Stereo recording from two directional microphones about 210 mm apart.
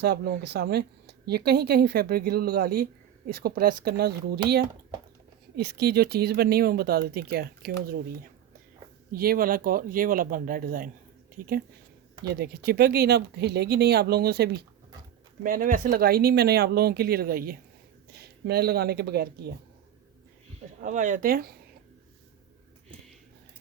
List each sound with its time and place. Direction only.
0.0 s a woman's voice: 50° right (ahead or behind)
5.5 s a woman's voice: 50° right (ahead or behind)
20.8 s speech: 35° right (ahead or behind)